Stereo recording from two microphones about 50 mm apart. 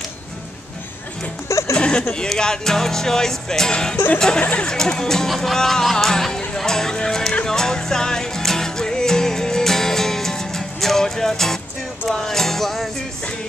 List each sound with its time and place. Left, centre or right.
1.7 s a sound: centre
2.1 s speech: centre
7.4 s music: centre